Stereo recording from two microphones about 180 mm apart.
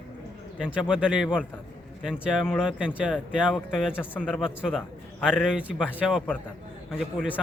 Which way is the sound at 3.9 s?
10° left (ahead or behind).